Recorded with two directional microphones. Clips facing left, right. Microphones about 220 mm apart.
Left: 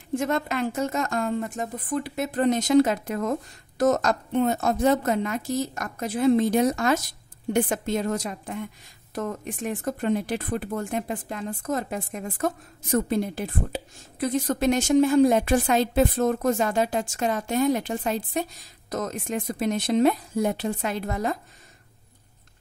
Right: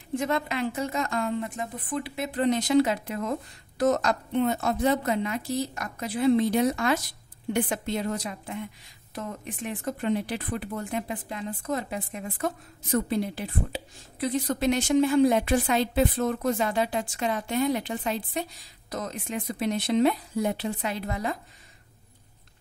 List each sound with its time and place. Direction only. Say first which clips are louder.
0.1 s a woman's voice: left 2 dB; 45° left (ahead or behind)